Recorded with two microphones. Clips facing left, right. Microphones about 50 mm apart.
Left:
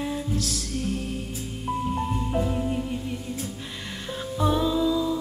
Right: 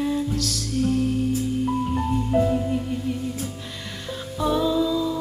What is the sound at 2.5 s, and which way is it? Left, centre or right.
Music, centre.